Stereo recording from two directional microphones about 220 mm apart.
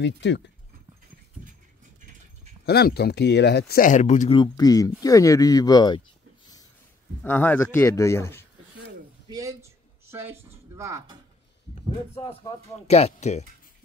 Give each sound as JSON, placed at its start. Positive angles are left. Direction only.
{"t": 0.0, "sound": "speech", "side_deg": 55}
{"t": 2.6, "sound": "speech", "side_deg": 45}
{"t": 4.4, "sound": "speech", "side_deg": 15}
{"t": 7.2, "sound": "speech", "side_deg": 10}
{"t": 9.3, "sound": "a man's voice", "side_deg": -15}
{"t": 12.2, "sound": "speech", "side_deg": 25}